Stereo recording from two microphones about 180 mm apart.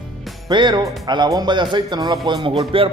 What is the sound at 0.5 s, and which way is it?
Speech, 25° right (ahead or behind).